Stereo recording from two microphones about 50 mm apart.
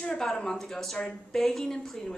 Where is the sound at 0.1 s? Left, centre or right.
Centre.